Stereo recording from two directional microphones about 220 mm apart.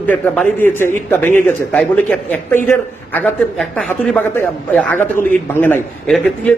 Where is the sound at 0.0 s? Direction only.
5° left (ahead or behind).